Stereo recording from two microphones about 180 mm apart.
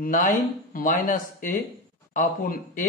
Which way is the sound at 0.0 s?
50° left (ahead or behind).